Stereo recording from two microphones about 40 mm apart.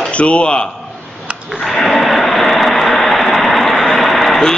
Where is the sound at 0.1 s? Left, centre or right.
Left.